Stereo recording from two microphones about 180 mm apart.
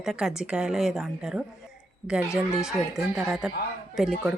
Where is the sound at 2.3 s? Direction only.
15° left (ahead or behind).